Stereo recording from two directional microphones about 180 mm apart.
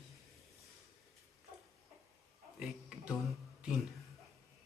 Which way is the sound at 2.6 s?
5° right (ahead or behind).